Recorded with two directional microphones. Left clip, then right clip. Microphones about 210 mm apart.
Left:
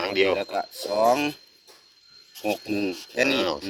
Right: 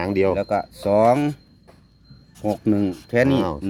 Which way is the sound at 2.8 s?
30° right (ahead or behind).